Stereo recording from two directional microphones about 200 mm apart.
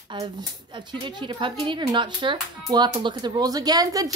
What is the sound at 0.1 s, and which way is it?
Speech, 20° right (ahead or behind).